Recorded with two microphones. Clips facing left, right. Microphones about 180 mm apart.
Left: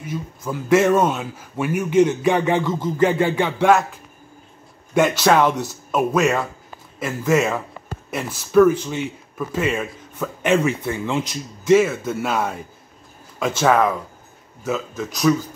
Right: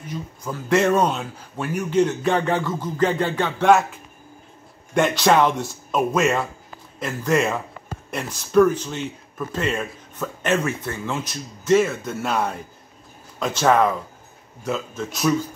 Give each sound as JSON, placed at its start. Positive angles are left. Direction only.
{"t": 0.0, "sound": "speech", "side_deg": 5}
{"t": 3.6, "sound": "speech", "side_deg": 0}
{"t": 13.6, "sound": "speech", "side_deg": 0}